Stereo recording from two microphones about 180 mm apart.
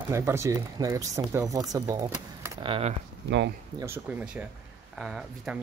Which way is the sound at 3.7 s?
15° right (ahead or behind).